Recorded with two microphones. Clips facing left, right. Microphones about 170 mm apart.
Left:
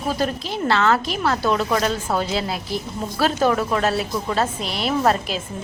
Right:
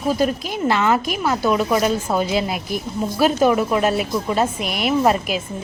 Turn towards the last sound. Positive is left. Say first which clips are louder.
# right 2 dB
turn(degrees=-10)  # may be behind; listen again after turning